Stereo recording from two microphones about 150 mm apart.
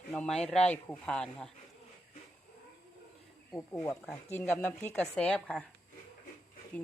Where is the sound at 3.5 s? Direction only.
15° left (ahead or behind).